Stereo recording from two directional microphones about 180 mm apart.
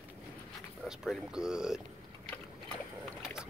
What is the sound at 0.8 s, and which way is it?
Speech, 5° right (ahead or behind).